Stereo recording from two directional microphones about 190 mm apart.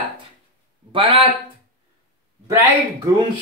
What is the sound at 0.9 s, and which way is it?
Speech, 30° right (ahead or behind).